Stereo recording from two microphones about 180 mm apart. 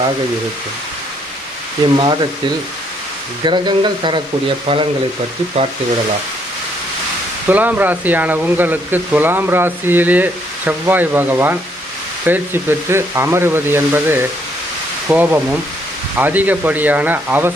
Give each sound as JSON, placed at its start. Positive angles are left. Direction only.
{"t": 3.4, "sound": "speech", "side_deg": -25}
{"t": 7.4, "sound": "speech", "side_deg": -10}